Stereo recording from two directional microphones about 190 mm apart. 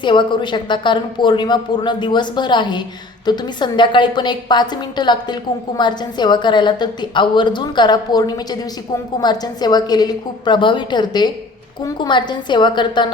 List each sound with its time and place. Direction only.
0.0 s a woman's voice: 25° left (ahead or behind)